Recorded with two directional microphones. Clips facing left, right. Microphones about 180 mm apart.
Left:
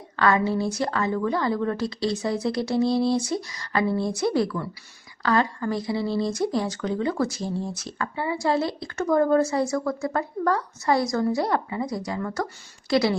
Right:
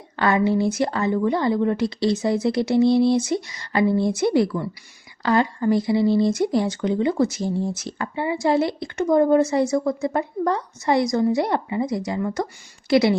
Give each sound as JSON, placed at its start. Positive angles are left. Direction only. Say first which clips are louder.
{"t": 0.2, "sound": "a woman's voice", "louder": "right 3 dB", "side_deg": -25}